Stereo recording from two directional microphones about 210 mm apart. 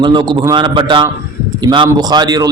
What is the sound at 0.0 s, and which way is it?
A man's voice, 20° right (ahead or behind).